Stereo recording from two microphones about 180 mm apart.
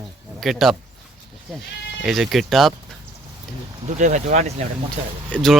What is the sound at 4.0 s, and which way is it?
Speech, 40° right (ahead or behind).